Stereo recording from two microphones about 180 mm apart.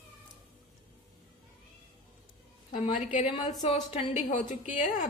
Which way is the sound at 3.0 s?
45° left (ahead or behind).